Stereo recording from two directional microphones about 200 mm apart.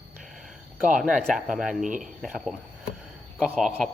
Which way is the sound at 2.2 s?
5° right (ahead or behind).